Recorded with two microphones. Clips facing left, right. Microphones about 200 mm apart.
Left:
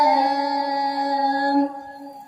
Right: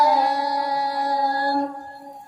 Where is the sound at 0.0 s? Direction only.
15° left (ahead or behind).